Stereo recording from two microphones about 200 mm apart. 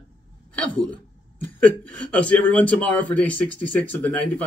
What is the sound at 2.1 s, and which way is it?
Speech, 5° left (ahead or behind).